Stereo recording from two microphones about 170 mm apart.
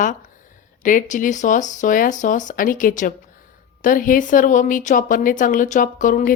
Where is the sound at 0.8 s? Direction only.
50° left (ahead or behind).